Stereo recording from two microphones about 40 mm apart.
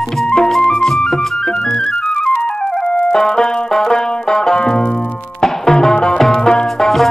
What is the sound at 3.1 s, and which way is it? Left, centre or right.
Banjo, centre.